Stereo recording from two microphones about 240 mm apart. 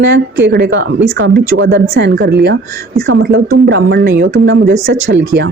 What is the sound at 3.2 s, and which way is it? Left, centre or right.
A woman's voice, right.